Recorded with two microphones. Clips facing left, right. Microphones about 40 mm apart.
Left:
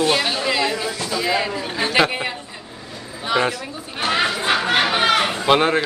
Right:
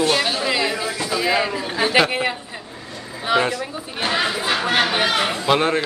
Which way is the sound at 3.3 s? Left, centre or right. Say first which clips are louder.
Right 1 dB; centre.